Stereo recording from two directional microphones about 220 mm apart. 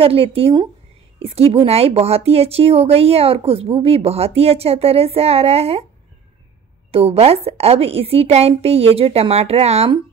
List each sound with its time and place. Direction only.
0.0 s speech: 25° right (ahead or behind)
6.9 s speech: 25° right (ahead or behind)